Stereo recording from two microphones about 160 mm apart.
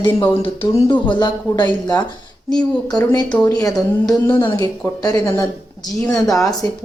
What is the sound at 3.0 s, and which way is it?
Speech, 25° left (ahead or behind).